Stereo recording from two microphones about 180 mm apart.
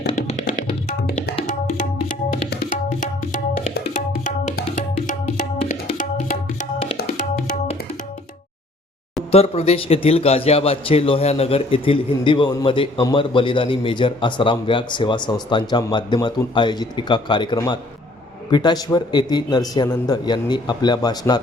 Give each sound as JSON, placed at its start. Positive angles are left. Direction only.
{"t": 0.9, "sound": "music", "side_deg": 50}
{"t": 2.6, "sound": "music", "side_deg": 45}
{"t": 3.9, "sound": "tabla", "side_deg": 45}
{"t": 4.6, "sound": "music", "side_deg": 45}
{"t": 9.3, "sound": "a man's voice", "side_deg": 35}